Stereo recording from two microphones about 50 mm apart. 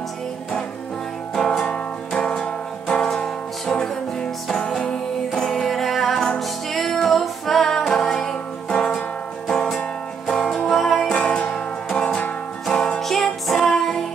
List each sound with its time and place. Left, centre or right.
1.3 s music: centre
13.0 s music: centre